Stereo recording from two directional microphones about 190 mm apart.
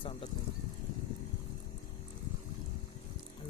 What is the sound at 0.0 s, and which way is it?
Speech, 30° left (ahead or behind).